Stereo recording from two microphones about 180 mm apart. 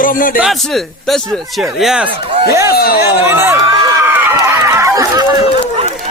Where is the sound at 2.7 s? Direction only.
60° left (ahead or behind).